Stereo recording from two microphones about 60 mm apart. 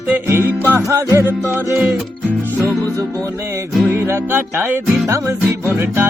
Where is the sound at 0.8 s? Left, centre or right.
Right.